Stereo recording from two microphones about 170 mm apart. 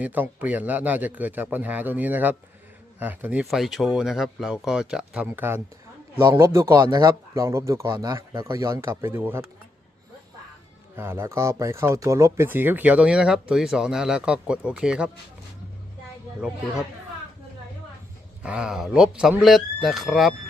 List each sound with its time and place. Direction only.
0.0 s speech: 10° right (ahead or behind)
10.9 s speech: 15° right (ahead or behind)
18.4 s speech: 5° right (ahead or behind)